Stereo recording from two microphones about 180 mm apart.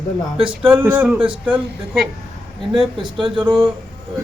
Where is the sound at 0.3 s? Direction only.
30° right (ahead or behind).